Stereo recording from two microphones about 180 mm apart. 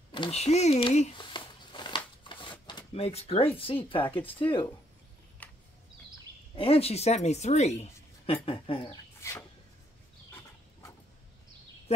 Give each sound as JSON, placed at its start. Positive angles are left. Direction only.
{"t": 0.1, "sound": "speech", "side_deg": 30}
{"t": 1.1, "sound": "shuffling cards", "side_deg": 25}
{"t": 3.5, "sound": "speech", "side_deg": 30}
{"t": 5.4, "sound": "a sound", "side_deg": 10}
{"t": 6.5, "sound": "speech", "side_deg": 30}
{"t": 9.2, "sound": "a sound", "side_deg": 15}